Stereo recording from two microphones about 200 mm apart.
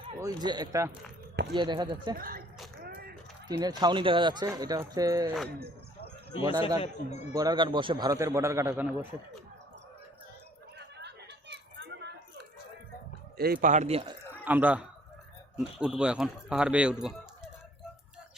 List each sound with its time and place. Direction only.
0.2 s speech: 20° right (ahead or behind)
2.1 s speech: 45° right (ahead or behind)
2.8 s a sound: 50° right (ahead or behind)
3.6 s speech: 20° right (ahead or behind)
5.5 s speech: 50° right (ahead or behind)
6.0 s a sound: 25° left (ahead or behind)
6.8 s speech: 35° left (ahead or behind)
7.3 s a man's voice: 20° right (ahead or behind)
10.8 s a sound: 60° right (ahead or behind)
13.3 s speech: 50° right (ahead or behind); by 14.1 s 30° right (ahead or behind)
14.4 s a man's voice: 10° right (ahead or behind)